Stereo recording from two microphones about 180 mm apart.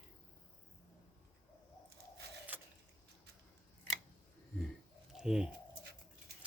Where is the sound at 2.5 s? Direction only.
10° right (ahead or behind).